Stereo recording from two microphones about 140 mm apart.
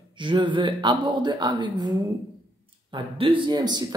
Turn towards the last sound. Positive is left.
turn(degrees=-30)  # may be behind; listen again after turning